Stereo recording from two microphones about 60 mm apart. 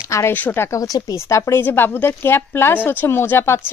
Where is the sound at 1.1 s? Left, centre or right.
Left.